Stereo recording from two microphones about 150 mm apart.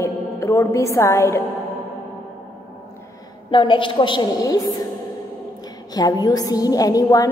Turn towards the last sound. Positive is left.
turn(degrees=25)  # may be behind; listen again after turning